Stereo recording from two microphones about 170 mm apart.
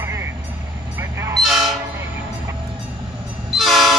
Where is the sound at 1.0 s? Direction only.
15° right (ahead or behind).